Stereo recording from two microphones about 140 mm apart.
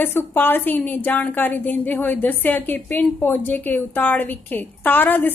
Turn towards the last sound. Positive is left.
turn(degrees=15)  # may be behind; listen again after turning